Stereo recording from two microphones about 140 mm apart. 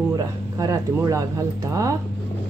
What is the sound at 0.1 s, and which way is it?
Speech, 25° right (ahead or behind).